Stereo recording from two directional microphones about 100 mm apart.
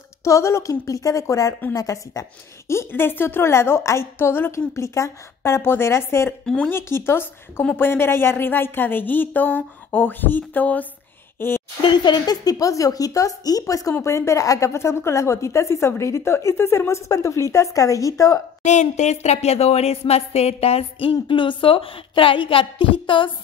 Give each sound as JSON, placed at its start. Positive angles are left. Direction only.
{"t": 0.2, "sound": "speech", "side_deg": 30}
{"t": 2.7, "sound": "a woman's voice", "side_deg": 25}
{"t": 6.4, "sound": "speech", "side_deg": 10}
{"t": 6.7, "sound": "a woman's voice", "side_deg": 25}
{"t": 11.8, "sound": "a woman's voice", "side_deg": 50}
{"t": 19.2, "sound": "speech", "side_deg": 90}